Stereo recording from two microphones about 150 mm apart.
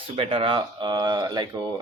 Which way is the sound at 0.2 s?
35° right (ahead or behind).